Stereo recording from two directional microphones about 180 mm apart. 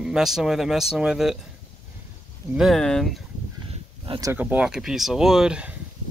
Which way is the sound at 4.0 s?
25° right (ahead or behind).